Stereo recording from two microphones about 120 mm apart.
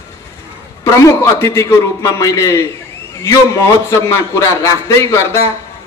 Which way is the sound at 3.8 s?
25° left (ahead or behind).